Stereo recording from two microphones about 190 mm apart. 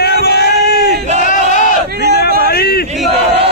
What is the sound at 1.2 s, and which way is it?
Battle cry, 40° left (ahead or behind).